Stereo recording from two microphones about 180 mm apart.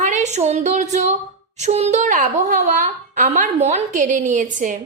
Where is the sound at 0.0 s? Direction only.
40° right (ahead or behind).